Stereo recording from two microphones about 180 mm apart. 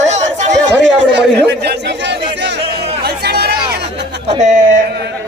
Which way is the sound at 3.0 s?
65° right (ahead or behind).